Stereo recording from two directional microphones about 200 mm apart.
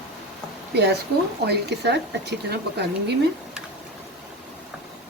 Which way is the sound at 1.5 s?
55° right (ahead or behind).